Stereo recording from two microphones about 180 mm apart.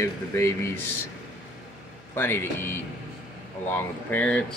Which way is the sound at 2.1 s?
10° left (ahead or behind).